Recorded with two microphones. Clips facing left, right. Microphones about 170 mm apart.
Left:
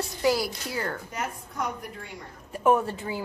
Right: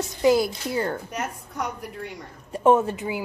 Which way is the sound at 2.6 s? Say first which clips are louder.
Right 4 dB; 20° right (ahead or behind).